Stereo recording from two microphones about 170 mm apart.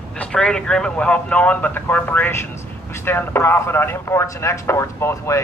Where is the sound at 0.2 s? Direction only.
5° left (ahead or behind).